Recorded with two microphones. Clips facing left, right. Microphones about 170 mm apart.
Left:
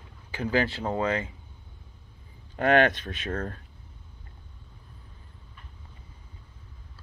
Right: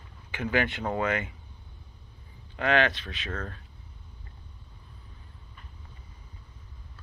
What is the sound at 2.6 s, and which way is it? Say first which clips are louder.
Speech: left 4 dB; 50° left (ahead or behind).